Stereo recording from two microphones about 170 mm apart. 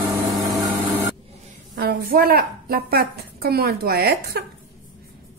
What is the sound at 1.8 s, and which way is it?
A woman's voice, 60° right (ahead or behind).